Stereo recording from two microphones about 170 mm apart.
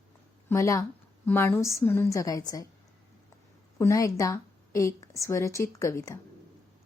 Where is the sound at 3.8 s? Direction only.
20° left (ahead or behind).